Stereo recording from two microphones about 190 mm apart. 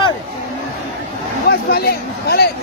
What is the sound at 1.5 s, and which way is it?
A man's voice, 55° left (ahead or behind).